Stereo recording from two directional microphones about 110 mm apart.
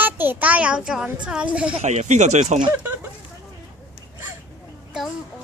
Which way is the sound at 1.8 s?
90° right.